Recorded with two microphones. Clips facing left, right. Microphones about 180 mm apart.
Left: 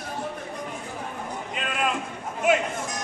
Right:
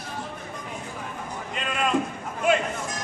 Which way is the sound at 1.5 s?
5° left (ahead or behind).